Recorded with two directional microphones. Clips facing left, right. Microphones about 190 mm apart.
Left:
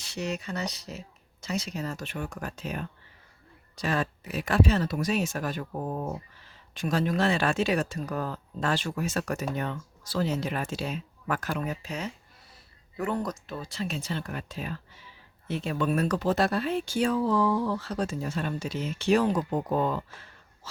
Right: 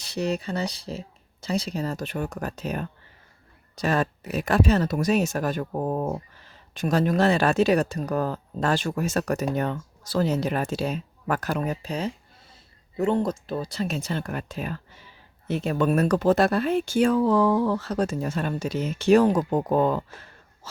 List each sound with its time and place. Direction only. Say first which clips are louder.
0.0 s speech: right 6 dB; 35° right (ahead or behind); by 6.1 s 60° right (ahead or behind)
6.7 s speech: right 5 dB; 45° right (ahead or behind)